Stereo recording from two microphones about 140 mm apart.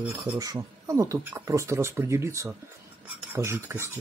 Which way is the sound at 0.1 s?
25° right (ahead or behind).